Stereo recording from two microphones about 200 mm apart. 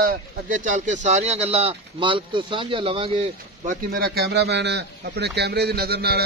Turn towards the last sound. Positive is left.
turn(degrees=-50)  # may be behind; listen again after turning